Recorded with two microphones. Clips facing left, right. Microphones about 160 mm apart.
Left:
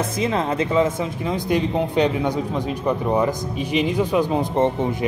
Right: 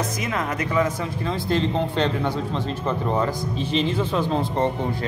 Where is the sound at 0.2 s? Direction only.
30° left (ahead or behind).